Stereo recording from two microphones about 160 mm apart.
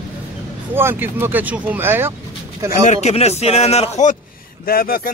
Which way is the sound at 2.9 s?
45° left (ahead or behind).